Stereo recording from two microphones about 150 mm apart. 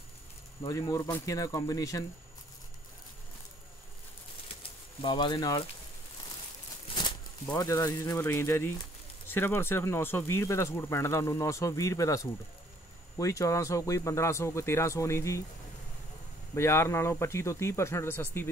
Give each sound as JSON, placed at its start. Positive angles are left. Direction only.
{"t": 0.6, "sound": "speech", "side_deg": 25}
{"t": 5.0, "sound": "speech", "side_deg": 30}
{"t": 7.5, "sound": "speech", "side_deg": 25}
{"t": 16.5, "sound": "speech", "side_deg": 20}